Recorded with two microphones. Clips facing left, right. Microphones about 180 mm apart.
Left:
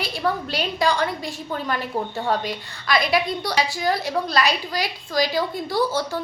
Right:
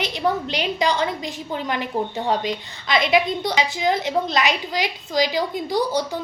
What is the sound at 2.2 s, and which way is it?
A woman's voice, 20° right (ahead or behind).